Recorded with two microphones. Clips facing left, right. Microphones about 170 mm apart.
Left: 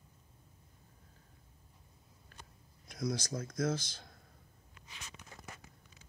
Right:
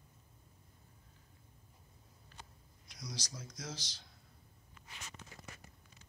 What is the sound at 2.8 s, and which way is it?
A man's voice, 50° left (ahead or behind).